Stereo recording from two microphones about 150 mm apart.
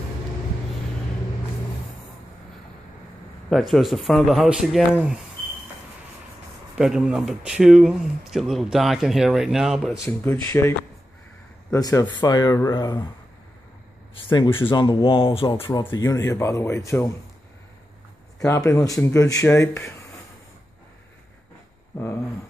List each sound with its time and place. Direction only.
3.4 s speech: centre (ahead or behind)
6.8 s speech: 5° right (ahead or behind)
10.0 s speech: 15° left (ahead or behind)
11.7 s speech: 20° left (ahead or behind)
14.1 s speech: 30° left (ahead or behind)
18.4 s speech: 20° left (ahead or behind)
21.9 s a sound: 15° left (ahead or behind)